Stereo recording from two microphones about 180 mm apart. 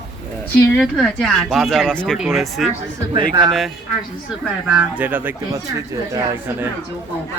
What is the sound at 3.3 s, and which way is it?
Speech, 25° right (ahead or behind).